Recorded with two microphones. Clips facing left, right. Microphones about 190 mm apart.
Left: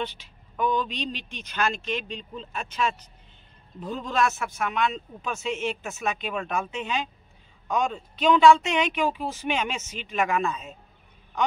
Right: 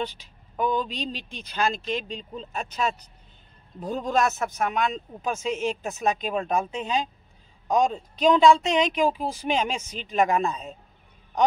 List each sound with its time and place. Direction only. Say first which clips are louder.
0.0 s speech: right 1 dB; 40° right (ahead or behind)